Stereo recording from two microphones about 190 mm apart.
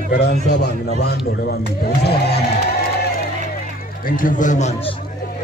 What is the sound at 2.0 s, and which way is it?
Music, 60° left (ahead or behind).